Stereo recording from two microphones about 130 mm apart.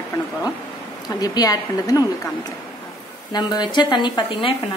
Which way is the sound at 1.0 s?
30° left (ahead or behind).